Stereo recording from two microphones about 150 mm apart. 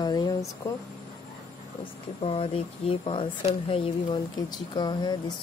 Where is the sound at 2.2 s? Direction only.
40° left (ahead or behind).